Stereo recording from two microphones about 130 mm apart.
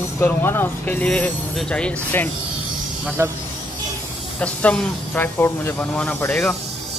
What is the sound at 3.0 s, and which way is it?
Speech, 15° right (ahead or behind).